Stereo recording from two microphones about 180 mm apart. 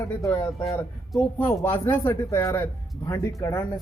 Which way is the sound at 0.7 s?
5° left (ahead or behind).